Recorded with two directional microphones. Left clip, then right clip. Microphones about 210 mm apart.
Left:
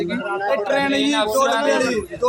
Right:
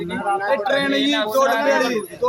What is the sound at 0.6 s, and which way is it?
Speech, 5° right (ahead or behind).